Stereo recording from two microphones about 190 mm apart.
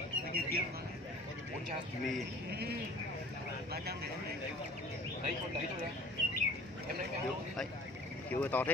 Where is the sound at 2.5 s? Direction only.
60° right (ahead or behind).